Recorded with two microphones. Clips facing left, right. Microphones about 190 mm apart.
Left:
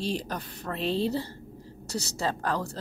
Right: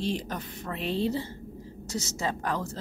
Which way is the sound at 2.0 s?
35° left (ahead or behind).